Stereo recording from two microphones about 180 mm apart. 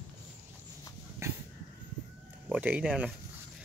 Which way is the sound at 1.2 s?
15° right (ahead or behind).